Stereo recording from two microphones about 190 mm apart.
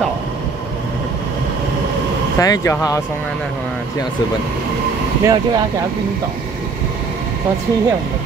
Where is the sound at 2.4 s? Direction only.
15° left (ahead or behind).